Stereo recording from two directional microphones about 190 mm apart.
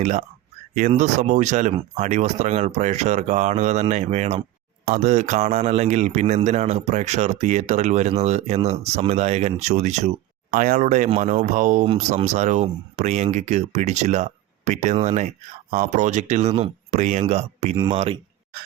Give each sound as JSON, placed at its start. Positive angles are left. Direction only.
{"t": 0.0, "sound": "a man's voice", "side_deg": -40}